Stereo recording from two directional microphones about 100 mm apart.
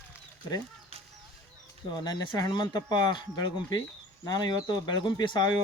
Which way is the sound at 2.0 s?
45° left (ahead or behind).